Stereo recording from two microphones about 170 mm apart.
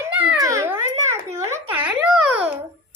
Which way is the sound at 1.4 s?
15° right (ahead or behind).